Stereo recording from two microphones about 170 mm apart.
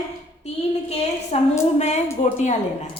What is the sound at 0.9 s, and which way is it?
A woman's voice, 40° left (ahead or behind).